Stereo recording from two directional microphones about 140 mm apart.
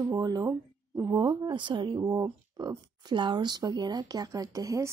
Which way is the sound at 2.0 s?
25° right (ahead or behind).